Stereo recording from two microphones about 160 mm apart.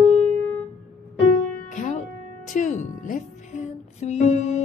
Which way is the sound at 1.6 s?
50° left (ahead or behind).